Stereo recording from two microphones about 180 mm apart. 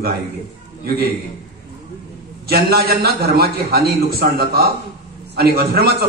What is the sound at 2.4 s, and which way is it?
A man's voice, 60° right (ahead or behind).